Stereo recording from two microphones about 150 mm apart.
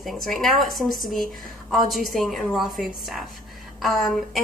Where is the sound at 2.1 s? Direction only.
Centre (ahead or behind).